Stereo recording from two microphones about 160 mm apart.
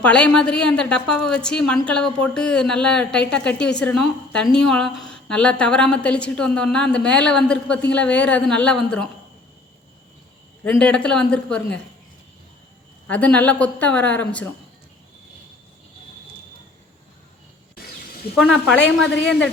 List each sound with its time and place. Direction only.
0.0 s a woman's voice: 5° left (ahead or behind)
10.6 s a woman's voice: 10° left (ahead or behind)
13.1 s speech: 10° left (ahead or behind)
18.3 s a woman's voice: centre (ahead or behind)
19.1 s a man's voice: 90° left